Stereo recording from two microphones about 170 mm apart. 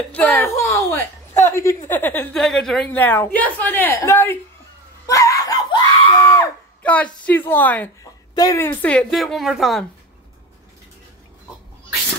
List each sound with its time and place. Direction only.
0.1 s a woman's voice: 10° left (ahead or behind)
5.0 s screaming: 20° left (ahead or behind)
6.8 s a sound: 10° left (ahead or behind)
7.2 s a woman's voice: 10° left (ahead or behind)